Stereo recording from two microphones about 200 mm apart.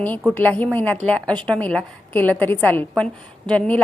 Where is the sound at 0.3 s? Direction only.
10° left (ahead or behind).